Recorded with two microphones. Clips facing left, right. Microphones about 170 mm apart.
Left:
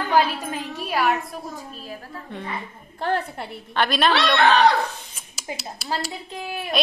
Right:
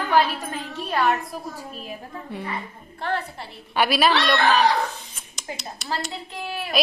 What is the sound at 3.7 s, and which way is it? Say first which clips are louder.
Speech: right 1 dB; 5° right (ahead or behind).